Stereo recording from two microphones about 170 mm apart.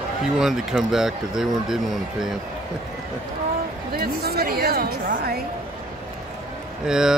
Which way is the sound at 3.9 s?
60° right (ahead or behind).